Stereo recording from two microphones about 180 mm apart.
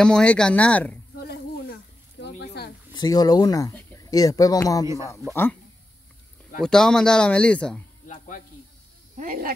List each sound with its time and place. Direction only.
0.0 s speech: 5° left (ahead or behind)
2.1 s a sound: 70° left (ahead or behind)
2.9 s speech: 20° left (ahead or behind)
4.8 s speech: 15° right (ahead or behind)
5.3 s speech: 10° left (ahead or behind)
6.6 s speech: 5° left (ahead or behind)
9.1 s speech: 50° right (ahead or behind)